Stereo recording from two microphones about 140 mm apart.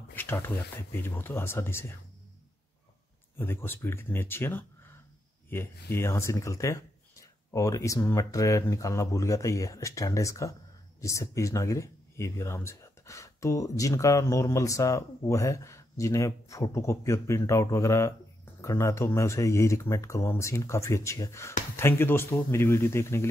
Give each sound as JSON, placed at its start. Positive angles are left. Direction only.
{"t": 0.1, "sound": "speech", "side_deg": 15}
{"t": 3.3, "sound": "speech", "side_deg": 15}